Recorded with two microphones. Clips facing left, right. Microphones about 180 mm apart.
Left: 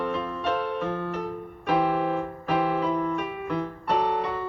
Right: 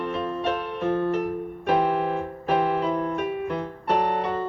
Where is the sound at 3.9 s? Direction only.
55° right (ahead or behind).